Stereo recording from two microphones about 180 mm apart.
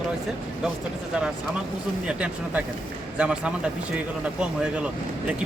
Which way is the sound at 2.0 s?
5° right (ahead or behind).